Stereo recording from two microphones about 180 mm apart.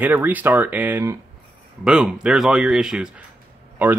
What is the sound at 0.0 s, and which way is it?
Speech, 10° right (ahead or behind).